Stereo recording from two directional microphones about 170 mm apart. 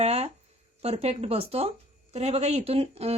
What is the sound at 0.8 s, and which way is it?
A woman's voice, 35° right (ahead or behind).